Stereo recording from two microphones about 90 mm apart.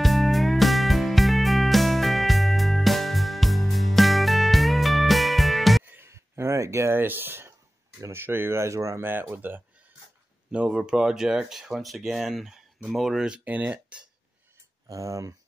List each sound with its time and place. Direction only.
0.0 s music: centre (ahead or behind)
5.9 s a sound: 25° right (ahead or behind)
8.0 s speech: 25° right (ahead or behind)
10.5 s speech: 15° right (ahead or behind)
13.4 s speech: 20° right (ahead or behind)
14.9 s speech: 40° right (ahead or behind)